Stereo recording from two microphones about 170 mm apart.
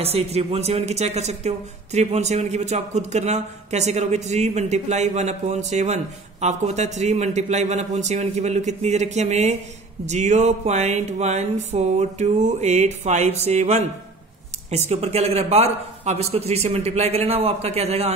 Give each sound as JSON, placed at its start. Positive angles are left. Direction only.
{"t": 0.0, "sound": "speech", "side_deg": -35}